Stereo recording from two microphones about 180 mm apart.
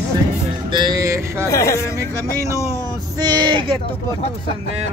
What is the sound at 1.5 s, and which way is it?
Speech, 15° left (ahead or behind).